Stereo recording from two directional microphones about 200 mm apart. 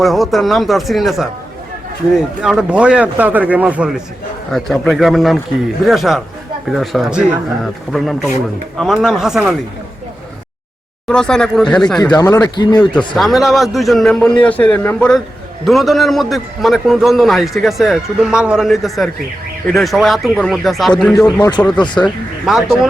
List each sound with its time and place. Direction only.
0.0 s a man's voice: centre (ahead or behind)
11.1 s a man's voice: 5° left (ahead or behind)
11.9 s speech: 20° left (ahead or behind)
13.0 s a man's voice: centre (ahead or behind)